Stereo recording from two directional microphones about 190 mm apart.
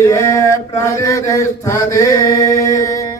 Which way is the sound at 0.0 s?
15° left (ahead or behind).